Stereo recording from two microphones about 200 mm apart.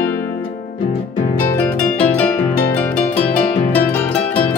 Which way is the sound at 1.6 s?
5° left (ahead or behind).